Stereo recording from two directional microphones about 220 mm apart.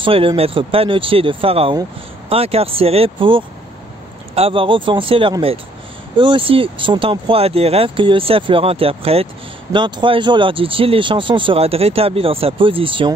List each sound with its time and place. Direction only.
0.0 s speech: 25° right (ahead or behind)